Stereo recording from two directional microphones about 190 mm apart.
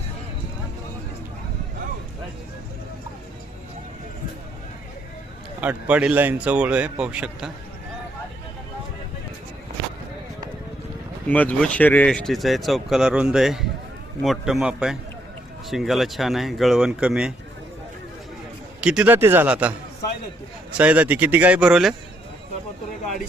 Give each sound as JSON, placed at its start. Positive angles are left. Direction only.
{"t": 5.5, "sound": "speech", "side_deg": -5}
{"t": 11.3, "sound": "speech", "side_deg": 10}
{"t": 18.8, "sound": "speech", "side_deg": -5}
{"t": 20.7, "sound": "speech", "side_deg": -5}